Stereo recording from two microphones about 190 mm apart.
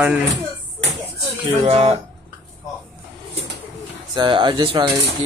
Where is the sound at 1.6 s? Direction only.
30° right (ahead or behind).